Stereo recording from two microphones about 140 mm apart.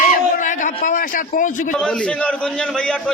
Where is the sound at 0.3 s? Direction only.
65° left (ahead or behind).